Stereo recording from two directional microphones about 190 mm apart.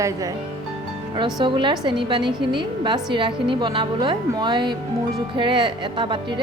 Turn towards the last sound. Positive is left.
turn(degrees=-25)  # may be behind; listen again after turning